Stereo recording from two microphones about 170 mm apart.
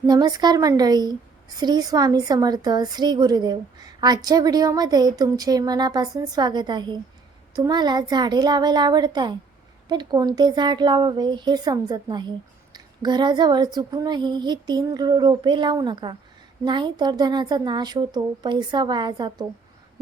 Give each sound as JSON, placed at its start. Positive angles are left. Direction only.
{"t": 0.1, "sound": "a woman's voice", "side_deg": -25}